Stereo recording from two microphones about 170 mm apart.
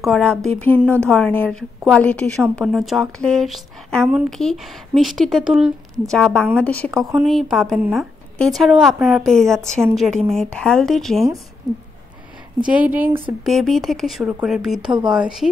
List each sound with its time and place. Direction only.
0.0 s speech: 5° left (ahead or behind)
11.7 s speech: 20° right (ahead or behind)
12.6 s speech: 10° right (ahead or behind)